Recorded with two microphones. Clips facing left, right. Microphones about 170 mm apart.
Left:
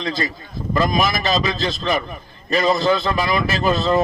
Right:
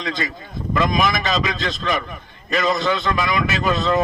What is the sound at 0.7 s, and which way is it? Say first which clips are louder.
A man's voice: even; 35° left (ahead or behind).